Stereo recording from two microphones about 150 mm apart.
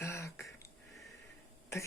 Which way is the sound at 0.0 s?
15° left (ahead or behind).